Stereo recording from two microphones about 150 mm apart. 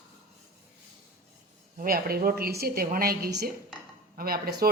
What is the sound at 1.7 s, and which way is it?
A woman's voice, 75° right (ahead or behind).